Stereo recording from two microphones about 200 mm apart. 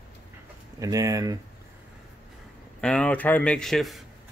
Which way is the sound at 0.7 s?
15° right (ahead or behind).